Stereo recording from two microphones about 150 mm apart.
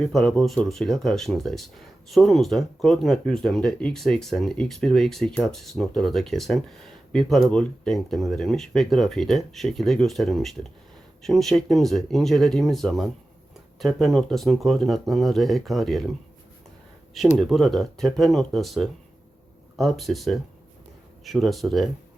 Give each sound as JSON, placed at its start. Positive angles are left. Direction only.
{"t": 0.0, "sound": "speech", "side_deg": 5}
{"t": 17.3, "sound": "speech", "side_deg": 0}